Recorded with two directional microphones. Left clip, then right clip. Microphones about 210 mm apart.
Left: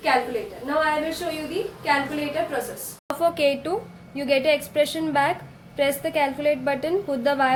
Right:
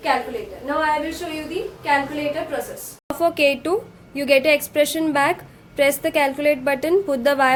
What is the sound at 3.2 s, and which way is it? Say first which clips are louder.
A woman's voice: right 3 dB; 20° right (ahead or behind).